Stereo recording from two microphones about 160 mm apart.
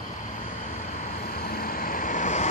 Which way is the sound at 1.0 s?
60° left (ahead or behind).